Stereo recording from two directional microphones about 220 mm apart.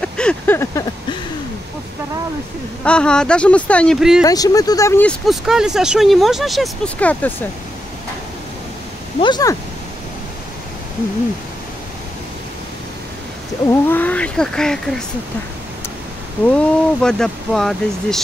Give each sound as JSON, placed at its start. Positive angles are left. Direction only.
{"t": 0.0, "sound": "a sound", "side_deg": 5}
{"t": 2.8, "sound": "speech", "side_deg": 5}
{"t": 4.2, "sound": "speech", "side_deg": 15}
{"t": 9.2, "sound": "speech", "side_deg": 15}
{"t": 13.7, "sound": "speech", "side_deg": 10}
{"t": 16.5, "sound": "speech", "side_deg": 5}